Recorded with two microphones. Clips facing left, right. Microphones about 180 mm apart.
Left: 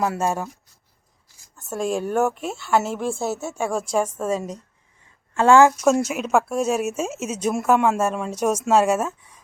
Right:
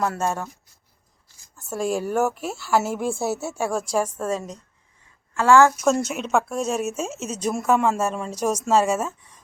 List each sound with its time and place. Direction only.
0.0 s speech: 5° left (ahead or behind)
1.7 s speech: 5° right (ahead or behind)
5.3 s a woman's voice: 25° left (ahead or behind)
5.9 s speech: 5° left (ahead or behind)